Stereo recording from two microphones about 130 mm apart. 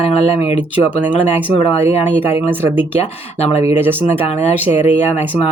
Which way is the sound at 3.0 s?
55° left (ahead or behind).